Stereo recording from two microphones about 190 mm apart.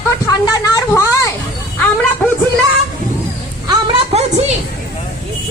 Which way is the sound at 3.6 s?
25° right (ahead or behind).